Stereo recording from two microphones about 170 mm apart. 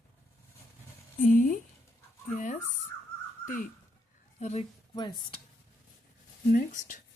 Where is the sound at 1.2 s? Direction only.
50° left (ahead or behind).